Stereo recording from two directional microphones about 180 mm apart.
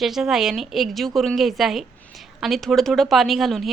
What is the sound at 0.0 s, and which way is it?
Speech, centre (ahead or behind).